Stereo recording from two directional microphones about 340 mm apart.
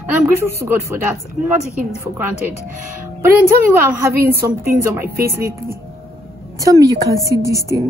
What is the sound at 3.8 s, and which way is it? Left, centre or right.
A woman's voice, centre.